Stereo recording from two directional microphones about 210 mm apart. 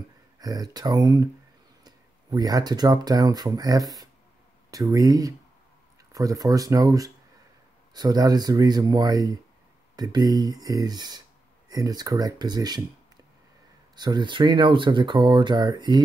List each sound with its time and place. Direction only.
0.4 s speech: 15° right (ahead or behind)
13.9 s speech: 20° right (ahead or behind)